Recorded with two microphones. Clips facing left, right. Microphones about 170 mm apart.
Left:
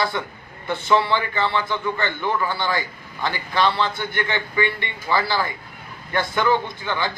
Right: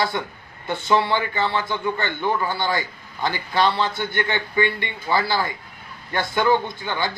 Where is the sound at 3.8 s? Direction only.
25° right (ahead or behind).